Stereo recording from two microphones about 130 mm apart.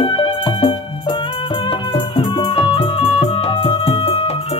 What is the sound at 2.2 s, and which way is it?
Music, 40° left (ahead or behind).